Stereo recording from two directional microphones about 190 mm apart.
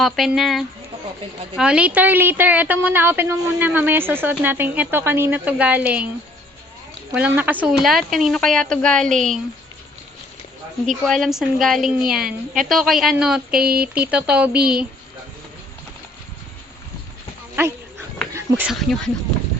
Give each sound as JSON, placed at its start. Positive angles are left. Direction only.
{"t": 0.0, "sound": "a woman's voice", "side_deg": 0}
{"t": 7.1, "sound": "a woman's voice", "side_deg": -10}
{"t": 11.0, "sound": "a woman's voice", "side_deg": 0}
{"t": 13.6, "sound": "speech", "side_deg": -55}
{"t": 13.8, "sound": "a woman's voice", "side_deg": -5}
{"t": 17.6, "sound": "insect", "side_deg": -15}
{"t": 18.3, "sound": "speech", "side_deg": -10}